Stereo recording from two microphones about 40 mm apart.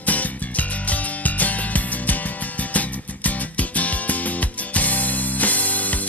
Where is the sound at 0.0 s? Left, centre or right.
Left.